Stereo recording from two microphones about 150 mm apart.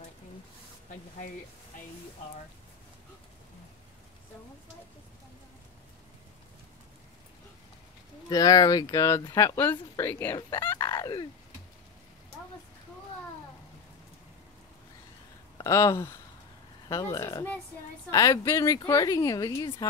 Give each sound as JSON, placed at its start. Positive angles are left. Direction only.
{"t": 0.8, "sound": "spray", "side_deg": 55}
{"t": 8.3, "sound": "speech", "side_deg": 25}
{"t": 10.8, "sound": "fowl", "side_deg": 30}
{"t": 15.5, "sound": "speech", "side_deg": 20}